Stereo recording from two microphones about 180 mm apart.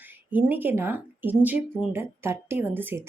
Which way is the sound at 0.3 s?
10° right (ahead or behind).